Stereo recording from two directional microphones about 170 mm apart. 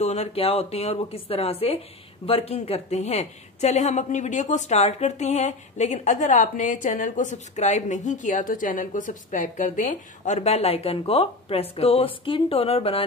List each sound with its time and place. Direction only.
0.0 s a woman's voice: 40° left (ahead or behind)